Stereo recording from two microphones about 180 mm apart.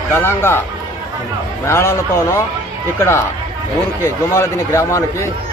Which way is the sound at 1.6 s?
15° left (ahead or behind).